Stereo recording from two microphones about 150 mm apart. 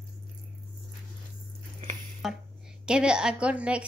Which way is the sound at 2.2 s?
Centre (ahead or behind).